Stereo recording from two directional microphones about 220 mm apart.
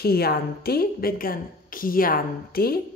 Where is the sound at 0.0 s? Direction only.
45° left (ahead or behind).